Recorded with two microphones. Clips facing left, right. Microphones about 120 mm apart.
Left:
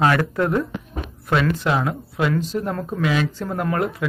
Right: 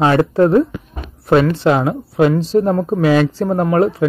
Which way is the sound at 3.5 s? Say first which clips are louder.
Right 9 dB; 30° right (ahead or behind).